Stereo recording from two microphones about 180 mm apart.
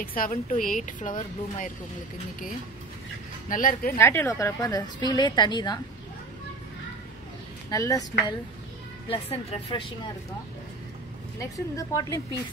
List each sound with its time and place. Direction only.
0.0 s speech: 50° left (ahead or behind)
3.4 s speech: 50° left (ahead or behind)
4.0 s a woman's voice: 15° left (ahead or behind)
7.7 s a woman's voice: 20° left (ahead or behind)
9.1 s speech: 35° left (ahead or behind)
11.3 s a woman's voice: 20° left (ahead or behind)